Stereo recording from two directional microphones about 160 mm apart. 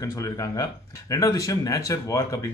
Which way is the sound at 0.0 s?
20° left (ahead or behind).